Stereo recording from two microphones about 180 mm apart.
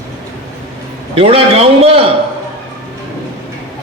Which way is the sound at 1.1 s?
30° right (ahead or behind).